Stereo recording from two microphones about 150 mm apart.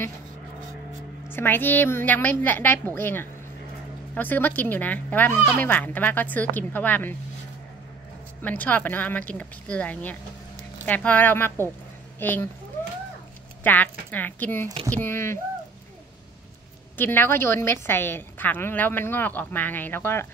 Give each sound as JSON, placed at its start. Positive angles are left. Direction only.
{"t": 1.3, "sound": "a woman's voice", "side_deg": 15}
{"t": 8.4, "sound": "a woman's voice", "side_deg": 10}
{"t": 12.8, "sound": "a sound", "side_deg": 15}
{"t": 13.7, "sound": "a woman's voice", "side_deg": 10}
{"t": 16.9, "sound": "a woman's voice", "side_deg": 15}